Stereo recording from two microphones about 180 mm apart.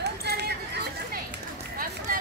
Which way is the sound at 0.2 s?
65° right (ahead or behind).